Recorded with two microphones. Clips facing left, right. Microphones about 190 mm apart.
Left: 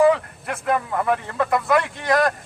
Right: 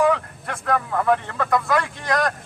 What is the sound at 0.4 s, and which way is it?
Speech, 5° left (ahead or behind).